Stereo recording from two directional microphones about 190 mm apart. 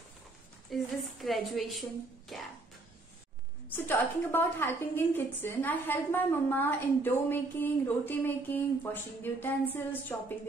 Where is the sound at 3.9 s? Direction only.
10° left (ahead or behind).